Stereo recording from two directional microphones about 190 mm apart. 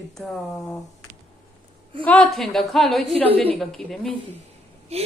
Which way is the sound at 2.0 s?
5° left (ahead or behind).